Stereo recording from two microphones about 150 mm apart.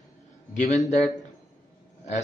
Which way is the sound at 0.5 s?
55° left (ahead or behind).